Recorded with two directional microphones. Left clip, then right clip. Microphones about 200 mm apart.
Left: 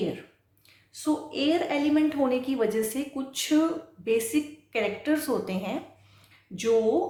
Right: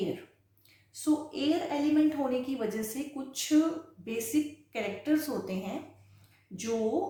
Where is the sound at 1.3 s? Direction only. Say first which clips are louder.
Left 5 dB; 40° left (ahead or behind).